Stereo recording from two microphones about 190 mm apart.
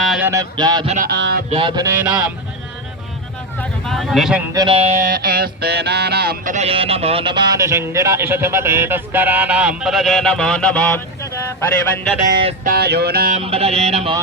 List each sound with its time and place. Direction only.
0.0 s mantra: centre (ahead or behind)
0.3 s mantra: 20° right (ahead or behind)
1.0 s music: 60° right (ahead or behind)
1.5 s a sound: 30° right (ahead or behind); by 2.3 s 10° right (ahead or behind)
3.8 s speech: centre (ahead or behind)
4.5 s a sound: 25° right (ahead or behind); by 11.3 s 10° left (ahead or behind)
12.6 s music: 55° right (ahead or behind)
13.3 s mantra: 30° right (ahead or behind)